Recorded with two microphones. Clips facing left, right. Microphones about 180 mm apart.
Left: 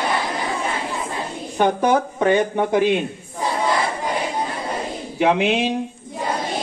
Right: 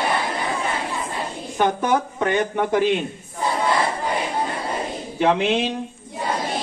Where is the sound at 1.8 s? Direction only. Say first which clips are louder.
Left 3 dB; 15° left (ahead or behind).